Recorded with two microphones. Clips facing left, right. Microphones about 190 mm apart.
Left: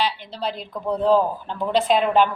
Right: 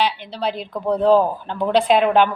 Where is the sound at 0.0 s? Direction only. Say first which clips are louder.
Right 3 dB; 65° right (ahead or behind).